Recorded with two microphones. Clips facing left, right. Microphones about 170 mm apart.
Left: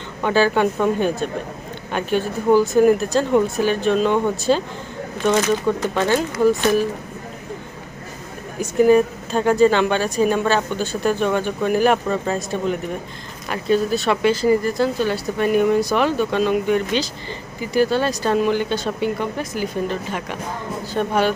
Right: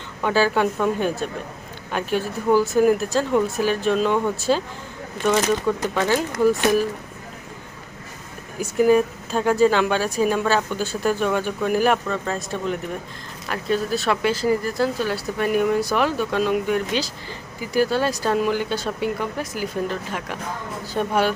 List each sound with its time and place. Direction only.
0.2 s speech: 5° right (ahead or behind)
8.5 s speech: 5° right (ahead or behind)
12.0 s speech: 10° left (ahead or behind); by 21.3 s 5° right (ahead or behind)